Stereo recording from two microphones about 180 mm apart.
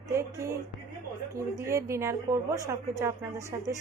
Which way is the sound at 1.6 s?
15° right (ahead or behind).